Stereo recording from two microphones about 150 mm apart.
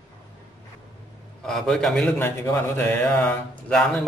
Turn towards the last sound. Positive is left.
turn(degrees=5)  # may be behind; listen again after turning